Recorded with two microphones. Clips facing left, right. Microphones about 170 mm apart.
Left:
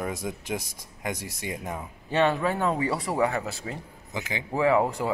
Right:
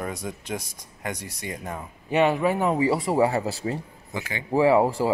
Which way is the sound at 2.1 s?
15° right (ahead or behind).